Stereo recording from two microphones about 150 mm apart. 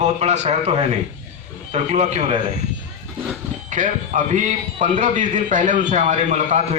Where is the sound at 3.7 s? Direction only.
55° right (ahead or behind).